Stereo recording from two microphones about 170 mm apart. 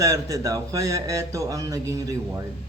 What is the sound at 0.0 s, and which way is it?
Speech, 20° right (ahead or behind).